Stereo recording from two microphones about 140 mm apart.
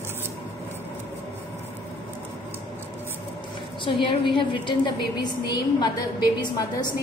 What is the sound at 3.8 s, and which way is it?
A woman's voice, 35° left (ahead or behind).